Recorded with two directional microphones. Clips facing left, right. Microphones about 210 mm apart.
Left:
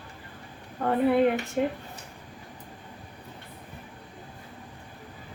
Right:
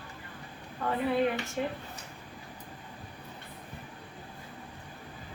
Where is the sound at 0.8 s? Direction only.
60° left (ahead or behind).